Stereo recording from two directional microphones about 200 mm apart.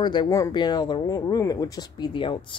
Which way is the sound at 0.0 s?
20° left (ahead or behind).